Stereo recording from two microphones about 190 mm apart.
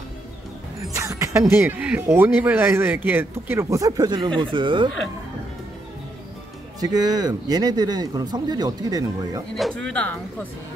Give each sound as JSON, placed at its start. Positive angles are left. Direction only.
{"t": 0.9, "sound": "music", "side_deg": -15}
{"t": 1.5, "sound": "speech", "side_deg": -10}
{"t": 6.8, "sound": "speech", "side_deg": -20}
{"t": 9.8, "sound": "speech", "side_deg": 5}